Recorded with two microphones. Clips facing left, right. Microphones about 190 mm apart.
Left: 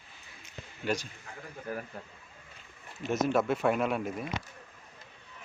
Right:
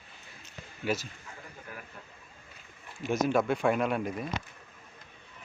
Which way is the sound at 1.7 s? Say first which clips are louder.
Left 10 dB; 35° left (ahead or behind).